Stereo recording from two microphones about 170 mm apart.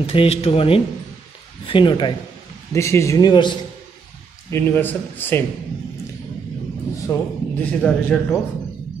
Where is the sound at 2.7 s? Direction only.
15° left (ahead or behind).